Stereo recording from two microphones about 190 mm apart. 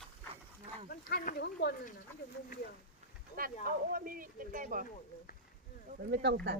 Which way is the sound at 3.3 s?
50° right (ahead or behind).